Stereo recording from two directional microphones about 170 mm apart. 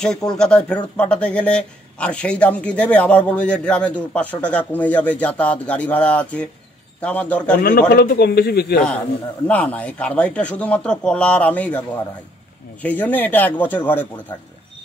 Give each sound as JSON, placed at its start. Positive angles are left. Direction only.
{"t": 0.3, "sound": "speech", "side_deg": 5}
{"t": 7.9, "sound": "a man's voice", "side_deg": 70}
{"t": 9.5, "sound": "speech", "side_deg": 10}